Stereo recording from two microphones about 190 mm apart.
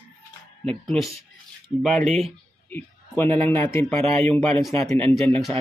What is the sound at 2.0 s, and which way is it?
Speech, 35° right (ahead or behind).